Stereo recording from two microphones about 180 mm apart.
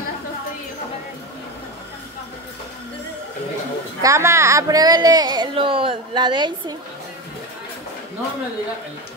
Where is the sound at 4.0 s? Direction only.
15° right (ahead or behind).